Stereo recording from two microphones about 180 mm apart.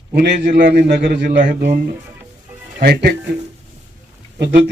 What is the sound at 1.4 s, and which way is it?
Speech, 50° right (ahead or behind).